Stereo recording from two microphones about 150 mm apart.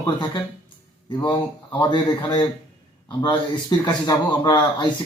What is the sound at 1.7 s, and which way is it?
Speech, 30° left (ahead or behind).